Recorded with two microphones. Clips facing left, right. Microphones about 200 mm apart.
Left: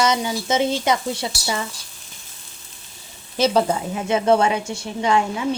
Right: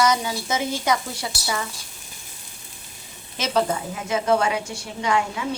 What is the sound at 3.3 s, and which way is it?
Speech, 30° left (ahead or behind).